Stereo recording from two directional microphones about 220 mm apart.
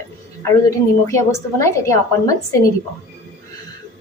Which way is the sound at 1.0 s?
15° left (ahead or behind).